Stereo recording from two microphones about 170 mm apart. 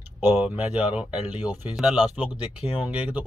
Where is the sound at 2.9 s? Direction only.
10° right (ahead or behind).